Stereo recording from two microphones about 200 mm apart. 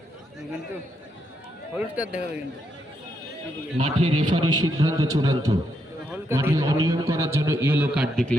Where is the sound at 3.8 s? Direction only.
30° right (ahead or behind); by 8.2 s 5° right (ahead or behind).